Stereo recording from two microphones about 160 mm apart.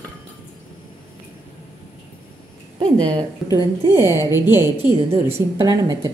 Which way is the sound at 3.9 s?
15° right (ahead or behind).